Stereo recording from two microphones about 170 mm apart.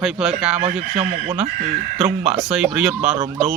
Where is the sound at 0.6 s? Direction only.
35° right (ahead or behind).